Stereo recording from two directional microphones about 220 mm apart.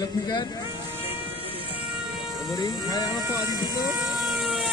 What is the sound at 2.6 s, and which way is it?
Speech, 15° left (ahead or behind).